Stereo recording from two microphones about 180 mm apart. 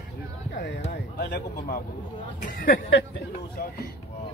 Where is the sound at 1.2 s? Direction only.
70° left (ahead or behind).